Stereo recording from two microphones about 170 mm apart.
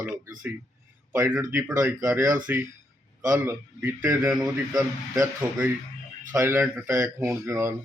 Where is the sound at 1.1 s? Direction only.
10° right (ahead or behind).